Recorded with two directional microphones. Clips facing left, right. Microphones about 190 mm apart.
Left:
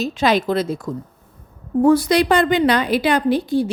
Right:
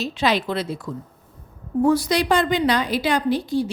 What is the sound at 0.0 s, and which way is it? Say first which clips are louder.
Speech: left 4 dB; 45° left (ahead or behind).